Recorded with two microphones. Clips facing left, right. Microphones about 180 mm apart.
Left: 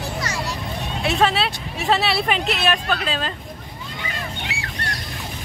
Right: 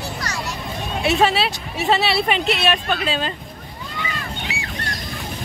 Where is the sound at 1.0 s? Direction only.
5° right (ahead or behind).